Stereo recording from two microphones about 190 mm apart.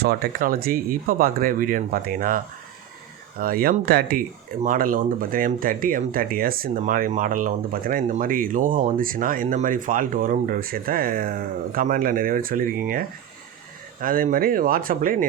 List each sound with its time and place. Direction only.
0.0 s speech: 55° right (ahead or behind)
3.4 s speech: 50° right (ahead or behind)